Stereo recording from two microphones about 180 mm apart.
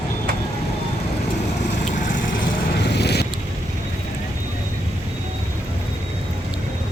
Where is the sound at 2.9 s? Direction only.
65° left (ahead or behind).